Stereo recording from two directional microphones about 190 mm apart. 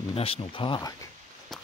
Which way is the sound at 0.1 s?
30° left (ahead or behind).